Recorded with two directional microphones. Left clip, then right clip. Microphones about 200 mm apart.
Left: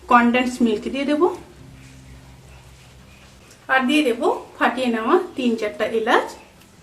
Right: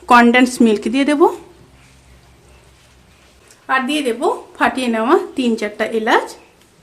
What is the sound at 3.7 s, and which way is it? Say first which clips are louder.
A woman's voice: right 1 dB; 45° right (ahead or behind).